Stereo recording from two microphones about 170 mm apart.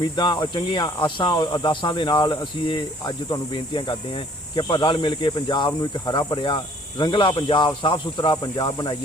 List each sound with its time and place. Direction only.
0.2 s speech: 25° left (ahead or behind)